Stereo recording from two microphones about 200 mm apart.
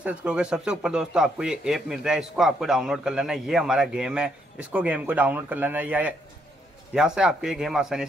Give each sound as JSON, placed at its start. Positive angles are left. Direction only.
{"t": 0.0, "sound": "speech", "side_deg": -5}